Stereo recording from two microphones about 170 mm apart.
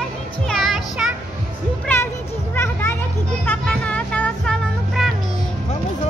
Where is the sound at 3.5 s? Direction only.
5° left (ahead or behind).